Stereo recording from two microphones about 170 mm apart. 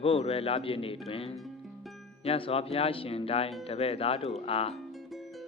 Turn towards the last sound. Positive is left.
turn(degrees=35)  # may be behind; listen again after turning